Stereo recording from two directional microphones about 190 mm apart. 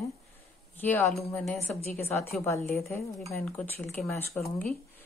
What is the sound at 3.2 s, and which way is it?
Speech, 5° left (ahead or behind).